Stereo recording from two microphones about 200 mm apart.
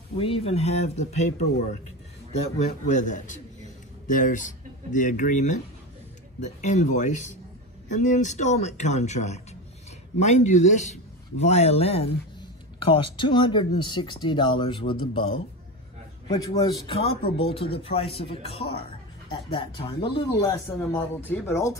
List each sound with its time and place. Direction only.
0.2 s a man's voice: 30° left (ahead or behind)
2.6 s a man's voice: 35° left (ahead or behind)
16.6 s a man's voice: 25° left (ahead or behind)